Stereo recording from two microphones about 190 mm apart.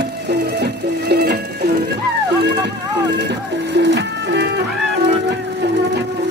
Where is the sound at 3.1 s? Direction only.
65° right (ahead or behind).